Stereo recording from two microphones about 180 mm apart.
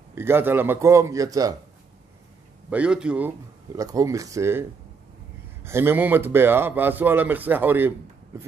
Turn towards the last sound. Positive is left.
turn(degrees=-10)  # may be behind; listen again after turning